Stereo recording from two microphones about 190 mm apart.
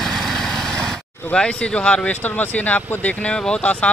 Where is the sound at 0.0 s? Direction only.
Centre (ahead or behind).